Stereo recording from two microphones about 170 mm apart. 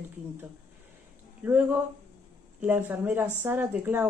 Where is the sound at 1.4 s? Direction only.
10° right (ahead or behind).